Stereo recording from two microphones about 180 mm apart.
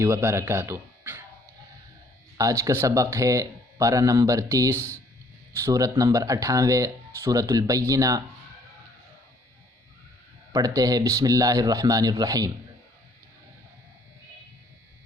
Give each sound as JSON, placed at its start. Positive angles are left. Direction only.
{"t": 0.0, "sound": "speech", "side_deg": -15}
{"t": 2.4, "sound": "speech", "side_deg": -20}
{"t": 10.5, "sound": "speech", "side_deg": -20}